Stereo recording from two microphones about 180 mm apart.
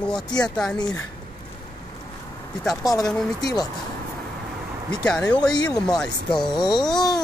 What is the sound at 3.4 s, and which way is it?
Speech, 20° left (ahead or behind).